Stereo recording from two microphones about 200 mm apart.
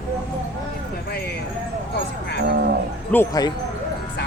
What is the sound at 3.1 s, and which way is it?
Speech, 15° left (ahead or behind).